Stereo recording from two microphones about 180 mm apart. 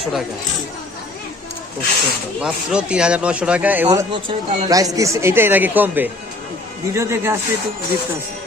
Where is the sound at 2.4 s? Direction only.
5° right (ahead or behind).